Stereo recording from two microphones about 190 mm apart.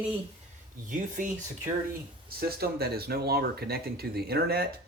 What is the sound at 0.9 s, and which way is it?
Speech, 45° right (ahead or behind).